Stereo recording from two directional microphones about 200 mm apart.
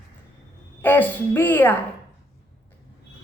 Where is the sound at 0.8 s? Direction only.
10° left (ahead or behind).